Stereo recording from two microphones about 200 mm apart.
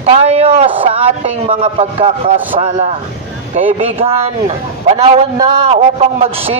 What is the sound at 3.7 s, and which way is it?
A man's voice, 30° right (ahead or behind).